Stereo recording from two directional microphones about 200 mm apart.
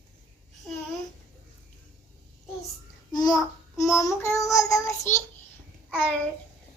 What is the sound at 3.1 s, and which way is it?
A child's voice, 20° left (ahead or behind).